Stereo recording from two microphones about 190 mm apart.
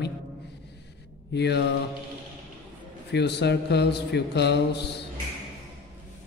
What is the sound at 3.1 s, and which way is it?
A man's voice, 60° left (ahead or behind).